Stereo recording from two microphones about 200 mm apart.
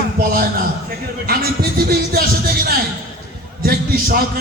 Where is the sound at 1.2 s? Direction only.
50° right (ahead or behind).